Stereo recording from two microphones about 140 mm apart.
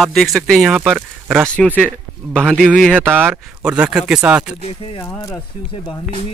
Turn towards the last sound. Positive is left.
turn(degrees=20)  # may be behind; listen again after turning